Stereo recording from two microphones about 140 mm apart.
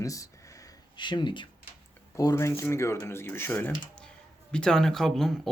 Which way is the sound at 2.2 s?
25° left (ahead or behind).